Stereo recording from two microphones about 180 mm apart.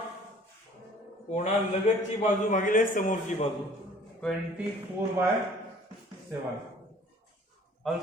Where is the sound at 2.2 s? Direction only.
45° left (ahead or behind).